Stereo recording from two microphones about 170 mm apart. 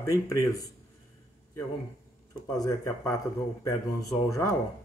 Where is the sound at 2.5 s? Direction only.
20° left (ahead or behind).